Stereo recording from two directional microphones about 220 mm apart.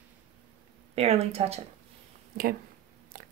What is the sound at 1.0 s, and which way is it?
Speech, 25° right (ahead or behind).